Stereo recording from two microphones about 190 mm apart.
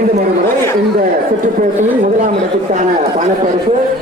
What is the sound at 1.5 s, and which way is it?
Speech, 40° right (ahead or behind).